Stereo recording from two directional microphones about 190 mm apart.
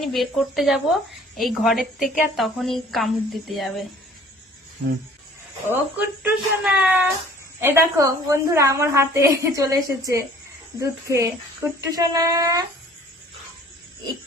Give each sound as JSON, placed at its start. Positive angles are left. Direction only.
{"t": 0.0, "sound": "a woman's voice", "side_deg": 0}
{"t": 5.7, "sound": "a woman's voice", "side_deg": -10}